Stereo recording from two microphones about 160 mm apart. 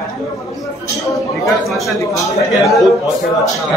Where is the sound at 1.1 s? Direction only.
Centre (ahead or behind).